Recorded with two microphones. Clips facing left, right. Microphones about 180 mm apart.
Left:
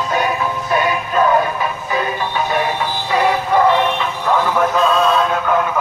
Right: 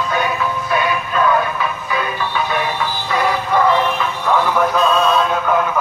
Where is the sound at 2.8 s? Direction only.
20° left (ahead or behind).